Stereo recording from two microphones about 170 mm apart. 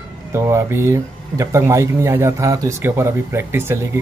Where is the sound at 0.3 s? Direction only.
15° right (ahead or behind).